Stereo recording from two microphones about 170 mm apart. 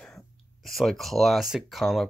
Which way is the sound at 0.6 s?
Centre (ahead or behind).